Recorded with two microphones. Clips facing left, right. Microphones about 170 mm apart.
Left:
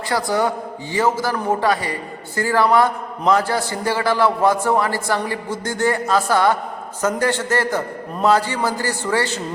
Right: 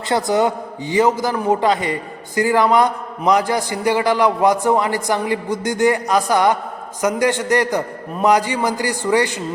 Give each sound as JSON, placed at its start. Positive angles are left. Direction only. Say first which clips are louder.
{"t": 0.1, "sound": "a man's voice", "louder": "right 3 dB", "side_deg": -20}